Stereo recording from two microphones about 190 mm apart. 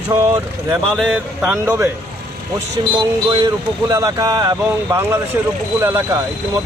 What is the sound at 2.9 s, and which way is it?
Speech, 20° right (ahead or behind).